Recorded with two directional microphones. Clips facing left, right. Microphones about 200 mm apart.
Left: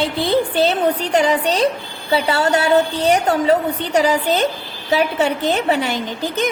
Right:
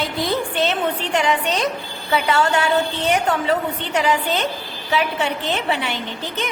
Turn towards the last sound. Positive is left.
turn(degrees=40)  # may be behind; listen again after turning